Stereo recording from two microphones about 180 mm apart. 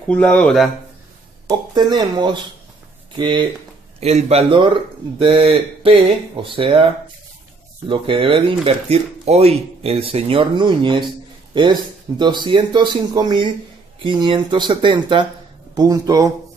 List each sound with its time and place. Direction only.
0.1 s speech: 5° left (ahead or behind)
1.5 s speech: 25° right (ahead or behind)
4.0 s speech: 35° right (ahead or behind); by 16.3 s 20° right (ahead or behind)